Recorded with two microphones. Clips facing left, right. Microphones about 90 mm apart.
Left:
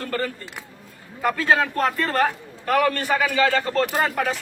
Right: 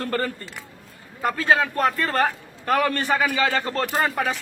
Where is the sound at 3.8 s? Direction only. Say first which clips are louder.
Even; centre (ahead or behind).